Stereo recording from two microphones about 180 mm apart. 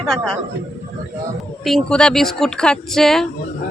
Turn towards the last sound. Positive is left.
turn(degrees=0)  # may be behind; listen again after turning